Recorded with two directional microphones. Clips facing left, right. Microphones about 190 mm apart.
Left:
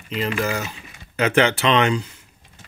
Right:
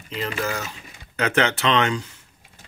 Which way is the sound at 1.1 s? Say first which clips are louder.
Left 3 dB; 10° left (ahead or behind).